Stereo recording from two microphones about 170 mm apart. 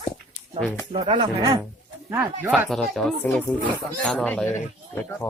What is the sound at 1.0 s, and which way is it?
Speech, 25° right (ahead or behind).